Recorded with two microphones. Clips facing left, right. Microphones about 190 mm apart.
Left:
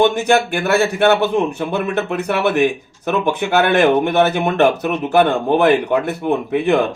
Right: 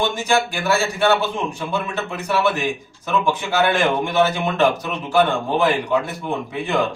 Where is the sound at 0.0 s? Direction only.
60° left (ahead or behind).